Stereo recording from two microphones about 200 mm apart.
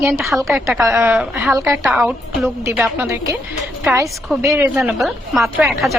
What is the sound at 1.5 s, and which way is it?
Speech, 15° right (ahead or behind).